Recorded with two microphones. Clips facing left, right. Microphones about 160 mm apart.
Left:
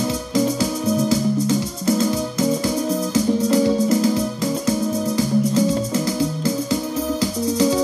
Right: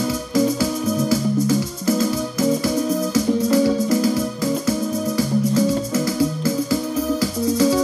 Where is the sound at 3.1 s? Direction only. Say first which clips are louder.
Left 1 dB; 25° left (ahead or behind).